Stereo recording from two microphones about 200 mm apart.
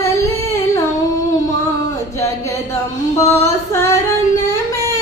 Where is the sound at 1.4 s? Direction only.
15° left (ahead or behind).